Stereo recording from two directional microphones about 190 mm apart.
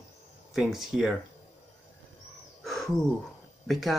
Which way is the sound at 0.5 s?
Centre (ahead or behind).